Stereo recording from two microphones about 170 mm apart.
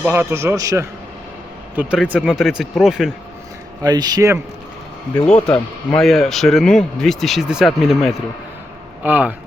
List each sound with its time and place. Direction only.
0.0 s a man's voice: 15° right (ahead or behind)
1.7 s speech: 10° right (ahead or behind)
3.8 s speech: 25° right (ahead or behind)
5.5 s a man's voice: 5° left (ahead or behind)